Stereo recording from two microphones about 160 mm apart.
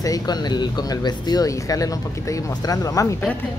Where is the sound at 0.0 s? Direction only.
25° left (ahead or behind).